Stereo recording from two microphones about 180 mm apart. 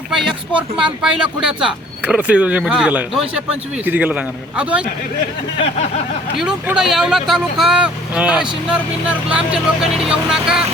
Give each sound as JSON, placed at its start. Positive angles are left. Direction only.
{"t": 0.1, "sound": "speech", "side_deg": -5}
{"t": 6.4, "sound": "speech", "side_deg": -5}